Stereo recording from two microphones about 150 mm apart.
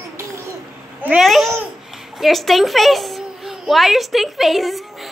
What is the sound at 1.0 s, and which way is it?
Babbling, 5° right (ahead or behind).